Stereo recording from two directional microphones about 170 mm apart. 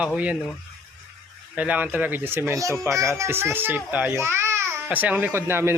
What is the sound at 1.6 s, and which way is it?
Speech, 10° right (ahead or behind).